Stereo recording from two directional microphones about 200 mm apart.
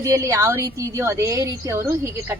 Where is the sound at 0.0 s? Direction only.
15° right (ahead or behind).